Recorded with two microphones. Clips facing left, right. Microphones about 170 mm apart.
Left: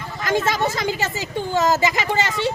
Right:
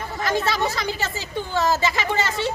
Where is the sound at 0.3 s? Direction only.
45° left (ahead or behind).